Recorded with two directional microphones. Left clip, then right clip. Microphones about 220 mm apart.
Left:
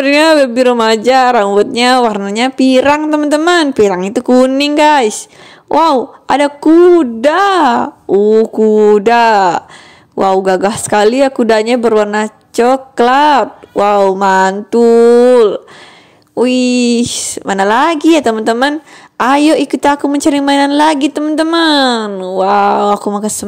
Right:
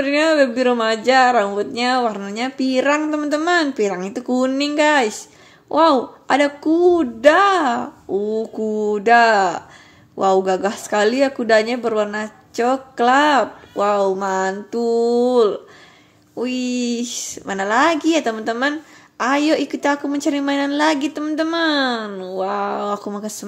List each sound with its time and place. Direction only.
0.0 s a woman's voice: 35° left (ahead or behind)